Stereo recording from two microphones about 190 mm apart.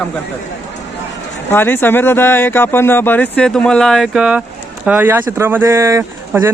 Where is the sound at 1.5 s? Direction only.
10° left (ahead or behind).